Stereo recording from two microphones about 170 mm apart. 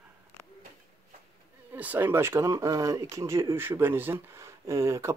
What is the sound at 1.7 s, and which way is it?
Speech, 10° right (ahead or behind).